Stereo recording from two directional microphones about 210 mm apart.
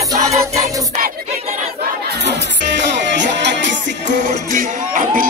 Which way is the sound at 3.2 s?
55° right (ahead or behind).